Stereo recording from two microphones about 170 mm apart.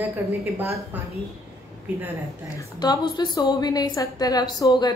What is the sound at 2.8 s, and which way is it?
A woman's voice, 25° left (ahead or behind).